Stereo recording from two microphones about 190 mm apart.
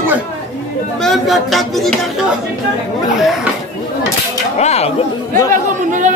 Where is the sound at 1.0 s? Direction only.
Centre (ahead or behind).